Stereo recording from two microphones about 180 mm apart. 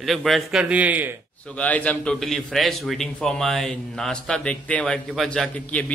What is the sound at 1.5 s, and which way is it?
A man's voice, 10° left (ahead or behind).